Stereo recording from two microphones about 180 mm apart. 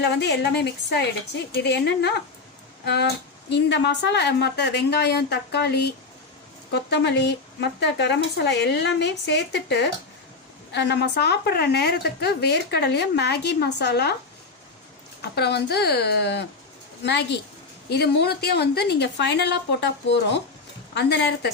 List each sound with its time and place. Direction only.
0.0 s a woman's voice: 70° left (ahead or behind)
15.2 s a woman's voice: 65° left (ahead or behind)